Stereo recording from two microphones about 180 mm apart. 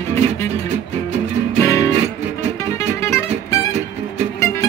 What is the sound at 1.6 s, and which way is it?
Music, 15° left (ahead or behind).